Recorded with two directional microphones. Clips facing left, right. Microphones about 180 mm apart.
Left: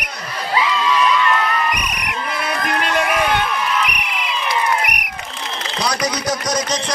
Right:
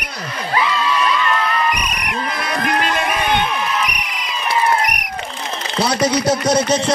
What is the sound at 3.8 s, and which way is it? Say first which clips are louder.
Basketball bounce: left 1 dB; 40° right (ahead or behind).